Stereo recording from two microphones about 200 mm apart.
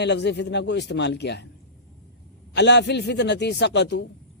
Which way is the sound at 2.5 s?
60° left (ahead or behind).